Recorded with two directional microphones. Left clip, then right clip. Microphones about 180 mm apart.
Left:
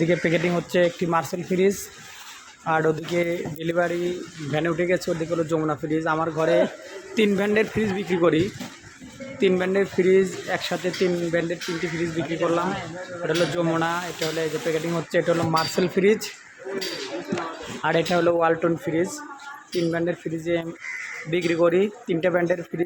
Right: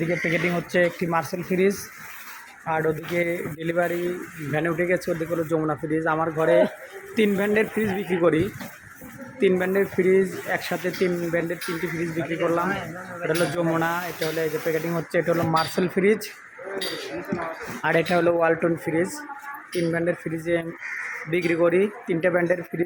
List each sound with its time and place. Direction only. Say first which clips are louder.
0.1 s speech: left 3 dB; 25° left (ahead or behind)
0.3 s speech: left 1 dB; 10° left (ahead or behind)
2.6 s speech: left 2 dB; 15° left (ahead or behind)
9.4 s speech: even; 5° left (ahead or behind)
17.8 s speech: even; centre (ahead or behind)